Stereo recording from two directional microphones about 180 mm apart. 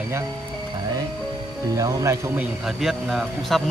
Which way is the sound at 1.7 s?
20° right (ahead or behind).